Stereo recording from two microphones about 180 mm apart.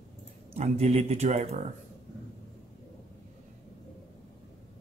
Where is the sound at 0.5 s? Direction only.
35° right (ahead or behind).